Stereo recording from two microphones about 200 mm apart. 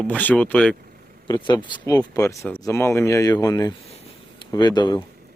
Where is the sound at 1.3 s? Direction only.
20° left (ahead or behind).